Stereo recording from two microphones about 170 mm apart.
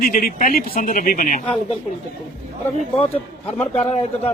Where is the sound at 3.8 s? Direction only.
40° left (ahead or behind).